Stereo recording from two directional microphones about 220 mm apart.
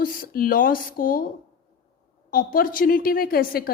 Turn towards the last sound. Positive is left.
turn(degrees=45)  # may be behind; listen again after turning